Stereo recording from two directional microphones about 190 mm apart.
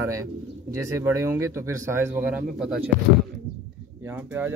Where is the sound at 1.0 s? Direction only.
15° right (ahead or behind).